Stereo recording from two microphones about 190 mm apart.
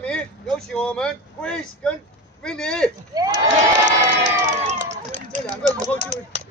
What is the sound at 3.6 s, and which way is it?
Speech, 40° right (ahead or behind).